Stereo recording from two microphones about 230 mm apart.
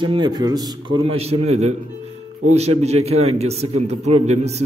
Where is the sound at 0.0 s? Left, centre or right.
Centre.